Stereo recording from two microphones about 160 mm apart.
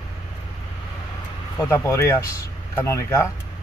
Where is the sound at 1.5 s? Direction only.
15° left (ahead or behind).